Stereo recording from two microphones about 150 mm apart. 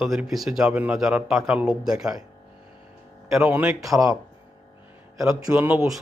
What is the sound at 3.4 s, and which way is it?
Speech, 15° right (ahead or behind).